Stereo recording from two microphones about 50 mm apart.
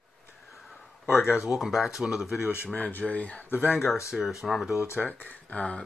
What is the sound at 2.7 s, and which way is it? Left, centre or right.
Speech, left.